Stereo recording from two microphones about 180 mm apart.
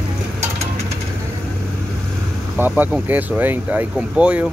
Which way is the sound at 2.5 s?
10° right (ahead or behind).